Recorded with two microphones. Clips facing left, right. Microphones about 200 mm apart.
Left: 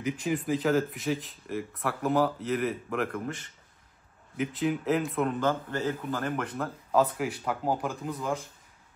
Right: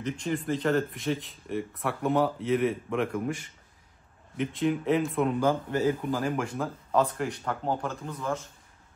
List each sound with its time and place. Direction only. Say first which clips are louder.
0.0 s speech: left 1 dB; 5° left (ahead or behind)
4.4 s speech: right 1 dB; centre (ahead or behind)
5.4 s a man's voice: right 3 dB; 10° right (ahead or behind)
6.4 s speech: right 2 dB; 5° left (ahead or behind)